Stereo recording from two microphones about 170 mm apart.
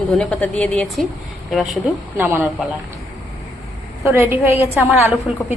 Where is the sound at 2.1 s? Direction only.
10° right (ahead or behind).